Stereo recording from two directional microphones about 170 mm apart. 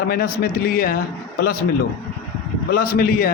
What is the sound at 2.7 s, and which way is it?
Speech, 60° left (ahead or behind).